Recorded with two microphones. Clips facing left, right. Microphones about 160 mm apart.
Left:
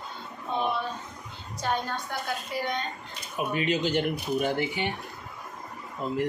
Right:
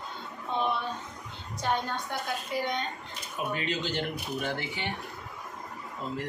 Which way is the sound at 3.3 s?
15° left (ahead or behind).